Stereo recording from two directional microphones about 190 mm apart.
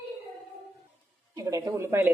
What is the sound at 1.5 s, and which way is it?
Speech, 15° right (ahead or behind).